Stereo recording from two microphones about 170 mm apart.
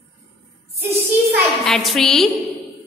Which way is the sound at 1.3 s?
Centre (ahead or behind).